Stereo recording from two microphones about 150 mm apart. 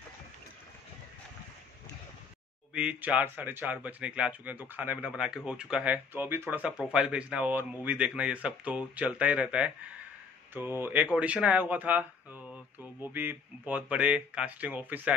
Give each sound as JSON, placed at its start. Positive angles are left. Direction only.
{"t": 2.7, "sound": "speech", "side_deg": -10}